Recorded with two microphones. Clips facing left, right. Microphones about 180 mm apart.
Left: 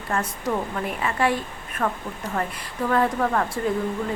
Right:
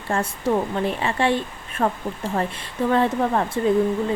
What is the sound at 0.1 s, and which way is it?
Speech, 30° right (ahead or behind).